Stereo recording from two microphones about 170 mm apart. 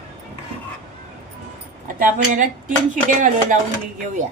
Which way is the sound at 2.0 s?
50° right (ahead or behind).